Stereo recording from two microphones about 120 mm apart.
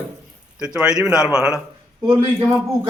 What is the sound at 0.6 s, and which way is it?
A man's voice, 5° right (ahead or behind).